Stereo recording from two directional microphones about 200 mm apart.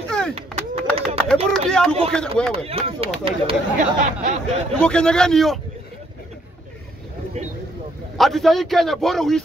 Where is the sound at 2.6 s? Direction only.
30° right (ahead or behind).